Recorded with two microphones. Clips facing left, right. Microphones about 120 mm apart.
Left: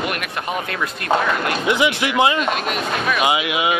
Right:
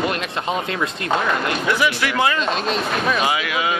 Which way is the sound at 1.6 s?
20° left (ahead or behind).